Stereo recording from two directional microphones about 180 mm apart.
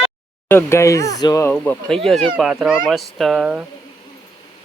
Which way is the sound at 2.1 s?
Centre (ahead or behind).